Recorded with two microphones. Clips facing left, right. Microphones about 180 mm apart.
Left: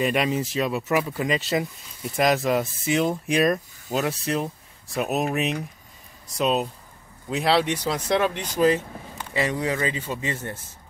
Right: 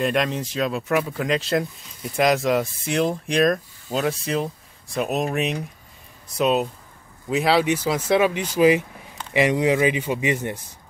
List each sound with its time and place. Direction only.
0.0 s speech: 5° left (ahead or behind); by 10.6 s 15° right (ahead or behind)